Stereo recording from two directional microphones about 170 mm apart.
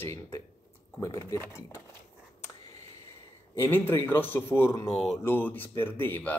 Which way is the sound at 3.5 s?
15° left (ahead or behind).